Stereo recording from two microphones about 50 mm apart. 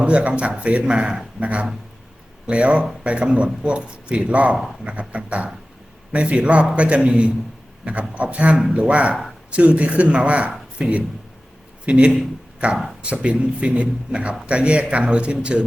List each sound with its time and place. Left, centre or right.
0.0 s speech: right